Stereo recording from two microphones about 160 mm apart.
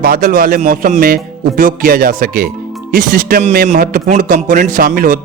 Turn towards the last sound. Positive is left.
turn(degrees=-60)  # may be behind; listen again after turning